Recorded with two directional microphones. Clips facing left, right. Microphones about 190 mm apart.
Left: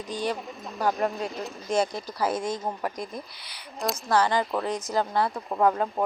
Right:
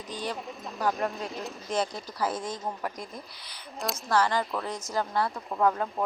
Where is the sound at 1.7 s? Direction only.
10° left (ahead or behind).